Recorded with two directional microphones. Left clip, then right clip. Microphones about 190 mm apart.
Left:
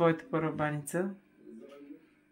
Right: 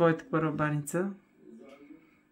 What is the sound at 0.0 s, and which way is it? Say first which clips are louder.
Speech: right 2 dB; 15° right (ahead or behind).